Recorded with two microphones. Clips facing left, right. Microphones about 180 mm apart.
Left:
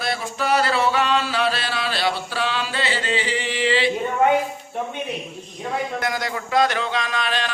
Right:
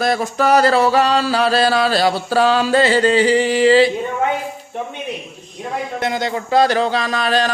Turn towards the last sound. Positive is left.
turn(degrees=-40)  # may be behind; listen again after turning